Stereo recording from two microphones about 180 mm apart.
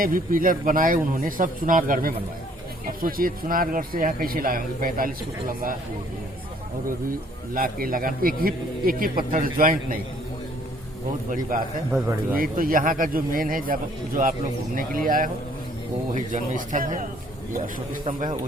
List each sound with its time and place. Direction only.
0.0 s speech: 50° right (ahead or behind)
7.5 s speech: 50° right (ahead or behind)
11.3 s speech: 50° right (ahead or behind)
11.9 s a man's voice: 10° right (ahead or behind)
12.3 s speech: 50° right (ahead or behind)